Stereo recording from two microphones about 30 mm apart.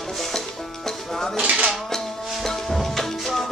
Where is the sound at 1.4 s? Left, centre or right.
Right.